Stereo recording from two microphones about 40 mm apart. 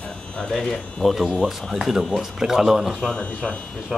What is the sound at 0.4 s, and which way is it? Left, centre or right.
A man's voice, centre.